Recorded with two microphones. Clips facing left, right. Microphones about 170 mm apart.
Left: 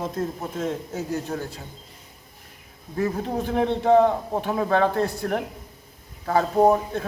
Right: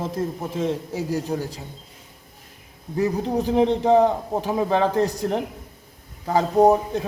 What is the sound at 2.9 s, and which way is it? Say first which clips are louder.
A man's voice: right 3 dB; 20° right (ahead or behind).